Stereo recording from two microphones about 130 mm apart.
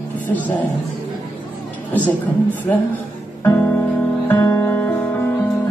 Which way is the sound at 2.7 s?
20° left (ahead or behind).